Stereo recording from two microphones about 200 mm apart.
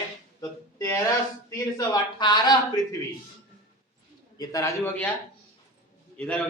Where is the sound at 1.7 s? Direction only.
20° left (ahead or behind).